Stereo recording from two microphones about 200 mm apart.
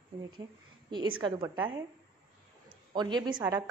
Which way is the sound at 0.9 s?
25° right (ahead or behind).